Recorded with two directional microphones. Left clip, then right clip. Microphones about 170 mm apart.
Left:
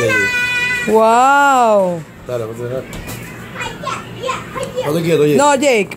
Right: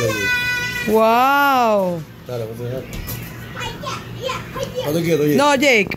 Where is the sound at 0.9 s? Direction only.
10° left (ahead or behind).